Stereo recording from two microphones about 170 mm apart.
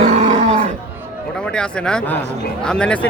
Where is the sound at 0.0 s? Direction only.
40° right (ahead or behind).